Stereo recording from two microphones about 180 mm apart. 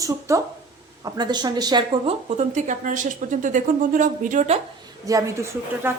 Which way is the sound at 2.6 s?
45° right (ahead or behind).